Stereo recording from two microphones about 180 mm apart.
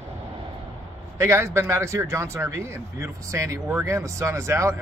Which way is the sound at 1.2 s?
15° right (ahead or behind).